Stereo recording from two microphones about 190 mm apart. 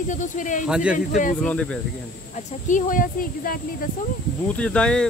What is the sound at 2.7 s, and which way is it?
Speech, 45° left (ahead or behind).